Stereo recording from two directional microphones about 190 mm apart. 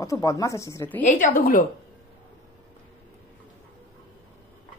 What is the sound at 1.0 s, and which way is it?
Speech, 45° left (ahead or behind).